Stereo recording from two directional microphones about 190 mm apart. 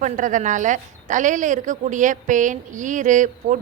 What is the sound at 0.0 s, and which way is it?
A woman's voice, 45° right (ahead or behind).